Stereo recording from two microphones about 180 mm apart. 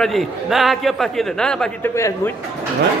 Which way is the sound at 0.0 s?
Centre (ahead or behind).